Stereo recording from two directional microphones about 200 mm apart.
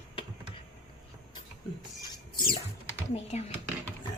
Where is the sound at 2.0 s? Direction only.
20° left (ahead or behind).